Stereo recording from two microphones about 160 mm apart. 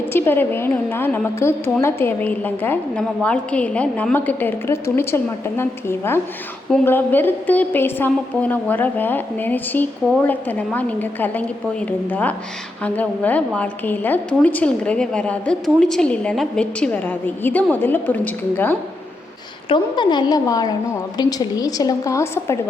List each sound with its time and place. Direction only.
0.1 s a woman's voice: 15° left (ahead or behind)
19.6 s a woman's voice: 30° left (ahead or behind)